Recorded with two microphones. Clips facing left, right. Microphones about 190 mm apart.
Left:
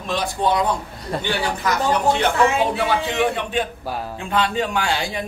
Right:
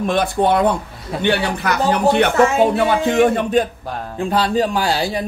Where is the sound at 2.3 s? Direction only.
45° right (ahead or behind).